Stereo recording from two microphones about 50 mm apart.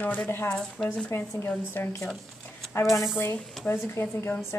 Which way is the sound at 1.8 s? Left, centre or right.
Left.